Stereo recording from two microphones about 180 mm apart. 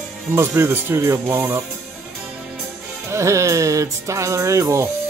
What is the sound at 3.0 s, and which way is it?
Speech, 15° right (ahead or behind).